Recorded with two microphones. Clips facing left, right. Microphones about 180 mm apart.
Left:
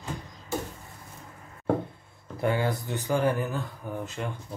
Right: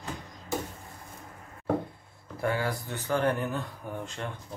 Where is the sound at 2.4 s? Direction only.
20° left (ahead or behind).